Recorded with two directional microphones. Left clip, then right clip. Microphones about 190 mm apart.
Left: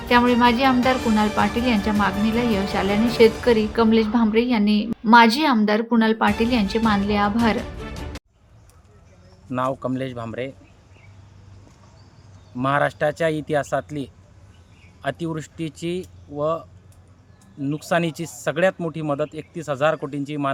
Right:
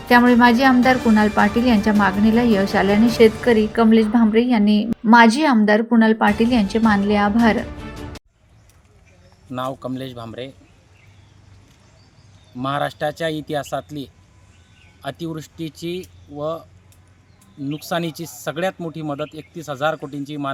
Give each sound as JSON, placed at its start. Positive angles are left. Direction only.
{"t": 0.1, "sound": "a woman's voice", "side_deg": -20}
{"t": 3.2, "sound": "a woman's voice", "side_deg": -5}
{"t": 9.5, "sound": "speech", "side_deg": 0}
{"t": 12.5, "sound": "speech", "side_deg": 5}